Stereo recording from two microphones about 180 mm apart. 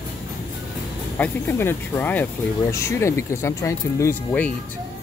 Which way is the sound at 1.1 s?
10° left (ahead or behind).